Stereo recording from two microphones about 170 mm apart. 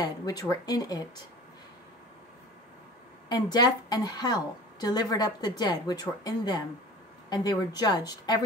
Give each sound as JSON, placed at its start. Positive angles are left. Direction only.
{"t": 0.0, "sound": "a woman's voice", "side_deg": 20}
{"t": 3.3, "sound": "a woman's voice", "side_deg": 25}